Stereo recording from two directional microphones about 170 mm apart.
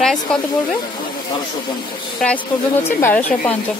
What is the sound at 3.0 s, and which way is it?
Speech, 10° left (ahead or behind).